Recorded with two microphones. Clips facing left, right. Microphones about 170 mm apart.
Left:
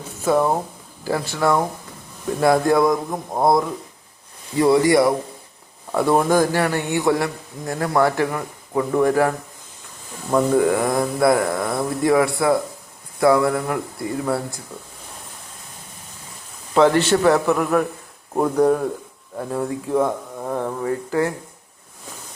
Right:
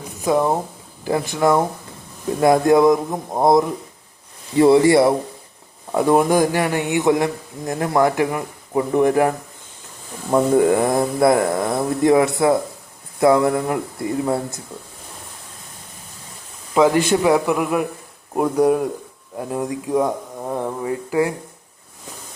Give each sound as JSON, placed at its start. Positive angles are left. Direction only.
{"t": 0.1, "sound": "a sound", "side_deg": -15}
{"t": 1.0, "sound": "speech", "side_deg": -20}
{"t": 4.5, "sound": "a man's voice", "side_deg": -25}
{"t": 10.3, "sound": "speech", "side_deg": -25}
{"t": 16.7, "sound": "a man's voice", "side_deg": -10}